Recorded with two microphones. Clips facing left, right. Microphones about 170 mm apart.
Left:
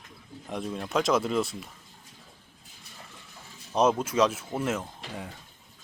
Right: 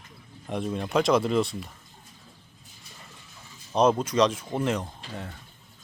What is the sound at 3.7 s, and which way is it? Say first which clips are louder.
Speech: right 2 dB; 5° left (ahead or behind).